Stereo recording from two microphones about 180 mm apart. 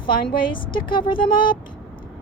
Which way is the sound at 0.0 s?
25° left (ahead or behind).